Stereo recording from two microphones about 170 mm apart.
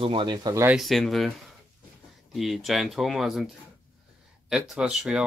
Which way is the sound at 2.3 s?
Centre (ahead or behind).